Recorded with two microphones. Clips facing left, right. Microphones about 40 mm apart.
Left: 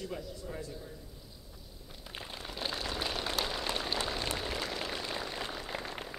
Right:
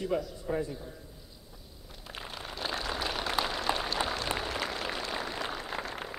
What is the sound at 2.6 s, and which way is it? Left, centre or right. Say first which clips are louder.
Vehicle: right 3 dB; centre.